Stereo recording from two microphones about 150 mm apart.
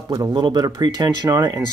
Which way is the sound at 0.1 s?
30° right (ahead or behind).